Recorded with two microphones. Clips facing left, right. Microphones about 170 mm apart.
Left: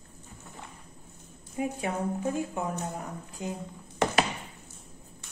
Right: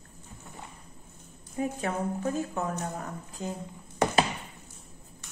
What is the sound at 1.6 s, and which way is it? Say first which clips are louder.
A woman's voice: even; 15° left (ahead or behind).